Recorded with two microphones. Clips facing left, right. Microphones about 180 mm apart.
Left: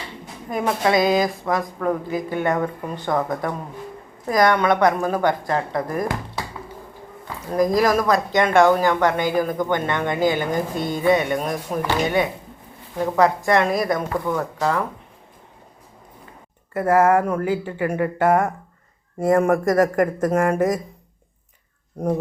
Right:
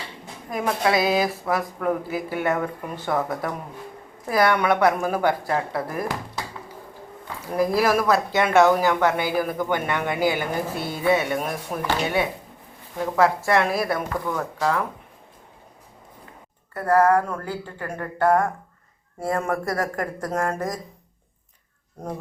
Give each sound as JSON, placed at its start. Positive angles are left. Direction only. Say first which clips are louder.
{"t": 0.5, "sound": "speech", "louder": "left 2 dB", "side_deg": 0}
{"t": 7.5, "sound": "speech", "louder": "left 2 dB", "side_deg": -10}
{"t": 16.8, "sound": "speech", "louder": "left 2 dB", "side_deg": 20}
{"t": 19.6, "sound": "speech", "louder": "left 9 dB", "side_deg": 90}
{"t": 20.3, "sound": "speech", "louder": "left 3 dB", "side_deg": 15}